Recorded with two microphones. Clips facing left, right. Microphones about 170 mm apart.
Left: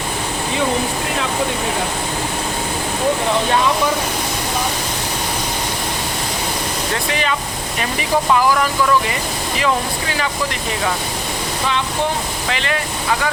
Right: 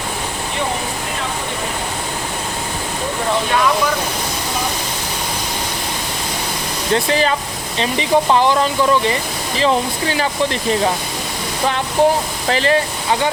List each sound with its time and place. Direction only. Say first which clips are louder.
6.9 s speech: right 7 dB; 35° right (ahead or behind)
12.5 s speech: right 8 dB; 35° right (ahead or behind)